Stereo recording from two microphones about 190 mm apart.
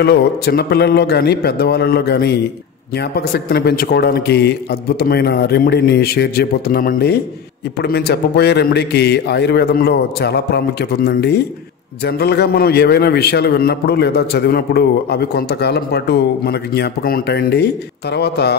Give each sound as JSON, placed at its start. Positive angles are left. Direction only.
{"t": 0.0, "sound": "a man's voice", "side_deg": 55}